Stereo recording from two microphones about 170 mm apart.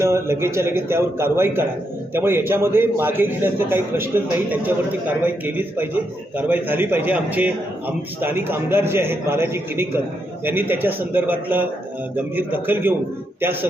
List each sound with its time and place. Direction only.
0.0 s a man's voice: 15° right (ahead or behind)